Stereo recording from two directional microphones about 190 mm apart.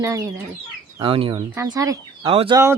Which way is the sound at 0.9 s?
30° right (ahead or behind).